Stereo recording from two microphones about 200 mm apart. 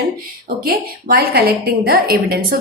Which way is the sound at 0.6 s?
45° right (ahead or behind).